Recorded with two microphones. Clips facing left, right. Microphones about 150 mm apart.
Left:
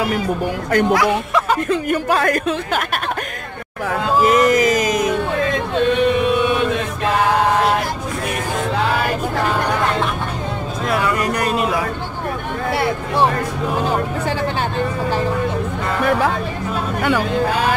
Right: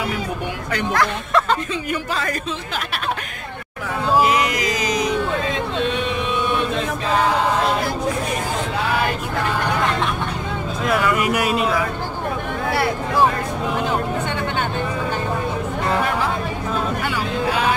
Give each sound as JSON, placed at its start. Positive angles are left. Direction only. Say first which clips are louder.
{"t": 0.7, "sound": "speech", "louder": "left 9 dB", "side_deg": 50}
{"t": 0.9, "sound": "speech", "louder": "left 3 dB", "side_deg": 10}
{"t": 1.7, "sound": "speech", "louder": "left 7 dB", "side_deg": 55}
{"t": 4.3, "sound": "music", "louder": "left 7 dB", "side_deg": 50}
{"t": 5.9, "sound": "a sound", "louder": "left 7 dB", "side_deg": 55}
{"t": 10.9, "sound": "a sound", "louder": "even", "side_deg": 0}